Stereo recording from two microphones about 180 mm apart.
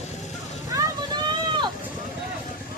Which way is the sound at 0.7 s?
20° right (ahead or behind).